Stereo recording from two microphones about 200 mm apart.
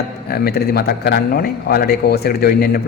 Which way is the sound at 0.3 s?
50° left (ahead or behind).